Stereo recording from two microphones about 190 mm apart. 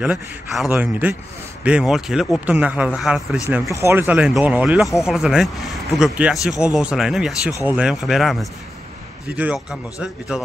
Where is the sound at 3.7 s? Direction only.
15° right (ahead or behind).